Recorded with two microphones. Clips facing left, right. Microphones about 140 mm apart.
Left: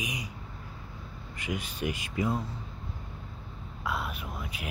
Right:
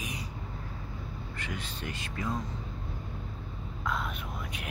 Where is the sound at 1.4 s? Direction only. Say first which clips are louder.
Left 7 dB; 10° left (ahead or behind).